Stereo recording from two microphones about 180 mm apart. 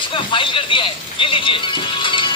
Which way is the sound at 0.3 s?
30° left (ahead or behind).